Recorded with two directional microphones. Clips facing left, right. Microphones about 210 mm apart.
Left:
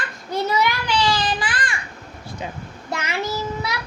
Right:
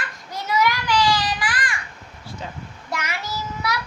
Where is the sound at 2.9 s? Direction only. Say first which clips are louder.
Left 2 dB; 25° left (ahead or behind).